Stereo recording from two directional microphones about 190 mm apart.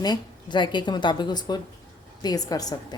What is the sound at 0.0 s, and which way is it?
A woman's voice, 25° left (ahead or behind).